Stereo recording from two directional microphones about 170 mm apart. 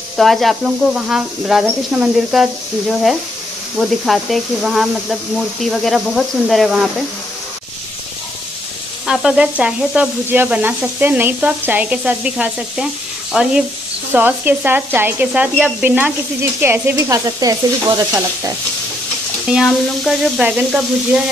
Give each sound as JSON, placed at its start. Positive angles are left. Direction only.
{"t": 0.2, "sound": "speech", "side_deg": 0}
{"t": 9.0, "sound": "sizzle", "side_deg": -5}
{"t": 13.3, "sound": "speech", "side_deg": -5}
{"t": 14.1, "sound": "sizzle", "side_deg": -10}
{"t": 19.5, "sound": "speech", "side_deg": 0}